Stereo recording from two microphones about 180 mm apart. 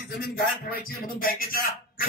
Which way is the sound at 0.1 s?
55° left (ahead or behind).